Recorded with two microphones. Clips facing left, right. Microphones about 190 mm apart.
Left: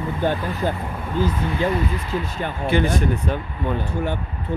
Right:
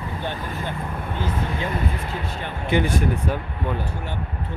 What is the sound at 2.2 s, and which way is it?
Speech, 45° left (ahead or behind).